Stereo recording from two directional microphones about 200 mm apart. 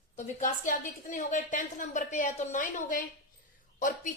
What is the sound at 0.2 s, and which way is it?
A woman's voice, 40° left (ahead or behind).